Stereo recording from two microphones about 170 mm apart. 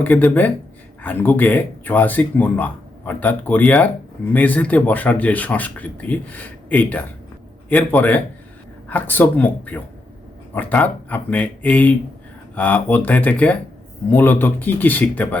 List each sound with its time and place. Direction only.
0.0 s speech: 10° left (ahead or behind)